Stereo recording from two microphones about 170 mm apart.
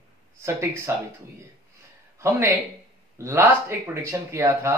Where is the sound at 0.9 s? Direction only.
15° right (ahead or behind).